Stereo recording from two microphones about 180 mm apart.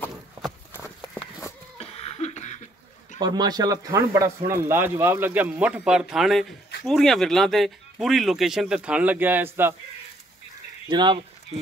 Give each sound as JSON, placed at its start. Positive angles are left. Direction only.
{"t": 1.8, "sound": "cough", "side_deg": 35}
{"t": 3.2, "sound": "speech", "side_deg": -20}
{"t": 10.9, "sound": "speech", "side_deg": -25}